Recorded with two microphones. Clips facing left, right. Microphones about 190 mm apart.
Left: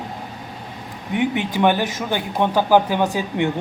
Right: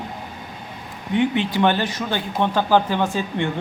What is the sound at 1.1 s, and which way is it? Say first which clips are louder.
Speech: right 1 dB; 15° left (ahead or behind).